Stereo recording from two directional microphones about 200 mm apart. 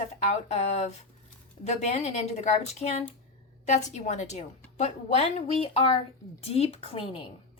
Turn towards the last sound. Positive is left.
turn(degrees=30)  # may be behind; listen again after turning